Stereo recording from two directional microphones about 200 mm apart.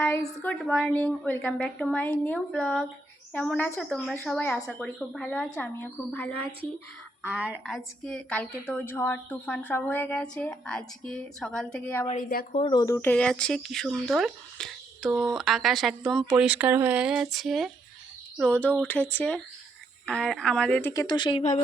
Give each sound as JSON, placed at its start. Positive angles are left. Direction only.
{"t": 0.0, "sound": "a woman's voice", "side_deg": 10}
{"t": 7.2, "sound": "a woman's voice", "side_deg": -10}
{"t": 12.1, "sound": "speech", "side_deg": 40}
{"t": 12.5, "sound": "a woman's voice", "side_deg": 20}
{"t": 20.9, "sound": "speech", "side_deg": 20}